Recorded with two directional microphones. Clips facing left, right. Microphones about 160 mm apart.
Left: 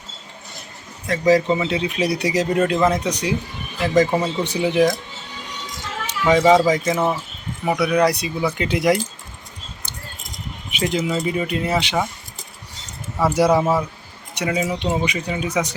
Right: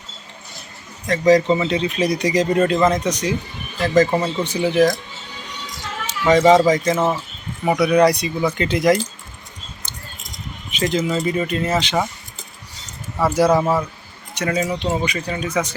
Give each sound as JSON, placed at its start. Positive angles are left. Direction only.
{"t": 1.0, "sound": "speech", "side_deg": 5}
{"t": 4.4, "sound": "speech", "side_deg": 15}
{"t": 6.1, "sound": "run", "side_deg": 5}
{"t": 6.4, "sound": "speech", "side_deg": 5}
{"t": 10.7, "sound": "speech", "side_deg": 10}
{"t": 13.1, "sound": "speech", "side_deg": 10}